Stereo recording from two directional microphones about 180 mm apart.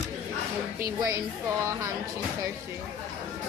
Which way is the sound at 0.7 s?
15° right (ahead or behind).